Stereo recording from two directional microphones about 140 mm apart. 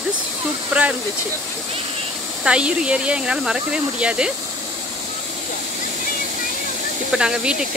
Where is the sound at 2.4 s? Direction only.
5° right (ahead or behind).